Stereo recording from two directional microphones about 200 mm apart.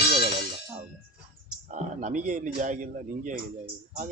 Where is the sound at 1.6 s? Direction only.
40° right (ahead or behind).